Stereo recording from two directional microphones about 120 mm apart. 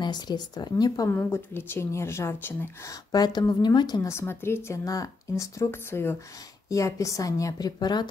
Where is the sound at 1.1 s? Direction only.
20° left (ahead or behind).